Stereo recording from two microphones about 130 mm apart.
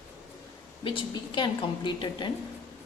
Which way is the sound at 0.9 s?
40° left (ahead or behind).